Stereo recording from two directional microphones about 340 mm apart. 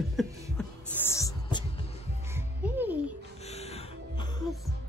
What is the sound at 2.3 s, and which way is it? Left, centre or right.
Music, centre.